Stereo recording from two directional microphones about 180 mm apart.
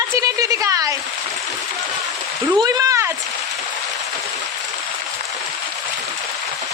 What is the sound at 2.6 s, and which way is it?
Speech, 20° right (ahead or behind).